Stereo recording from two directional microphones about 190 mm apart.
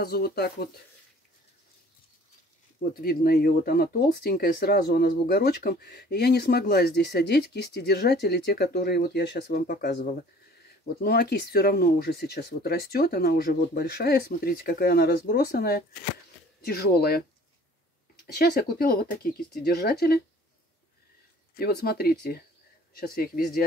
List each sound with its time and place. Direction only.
0.0 s speech: 55° left (ahead or behind)
2.8 s speech: 55° left (ahead or behind)
18.2 s speech: 55° left (ahead or behind)
21.5 s speech: 55° left (ahead or behind)